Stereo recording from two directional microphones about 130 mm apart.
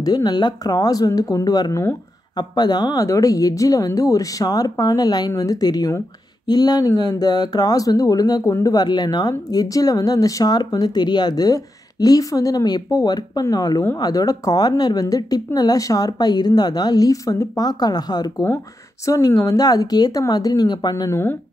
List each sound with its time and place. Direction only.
0.0 s a woman's voice: 30° left (ahead or behind)